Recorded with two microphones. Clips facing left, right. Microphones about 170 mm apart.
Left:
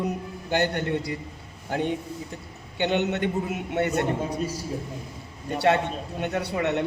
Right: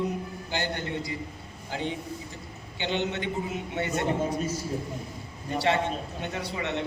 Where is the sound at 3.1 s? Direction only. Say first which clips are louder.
Left 4 dB; 55° left (ahead or behind).